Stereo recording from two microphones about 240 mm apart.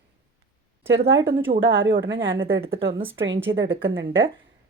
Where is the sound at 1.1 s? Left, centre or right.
Right.